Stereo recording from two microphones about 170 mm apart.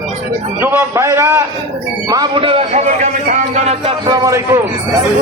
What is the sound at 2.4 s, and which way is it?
A man's voice, 35° right (ahead or behind).